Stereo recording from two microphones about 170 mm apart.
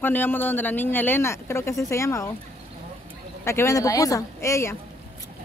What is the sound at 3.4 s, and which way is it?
Speech, 15° left (ahead or behind).